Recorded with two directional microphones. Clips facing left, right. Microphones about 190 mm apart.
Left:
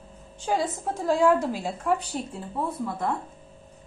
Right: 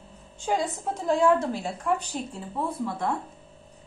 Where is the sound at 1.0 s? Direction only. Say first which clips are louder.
Left 1 dB; 5° left (ahead or behind).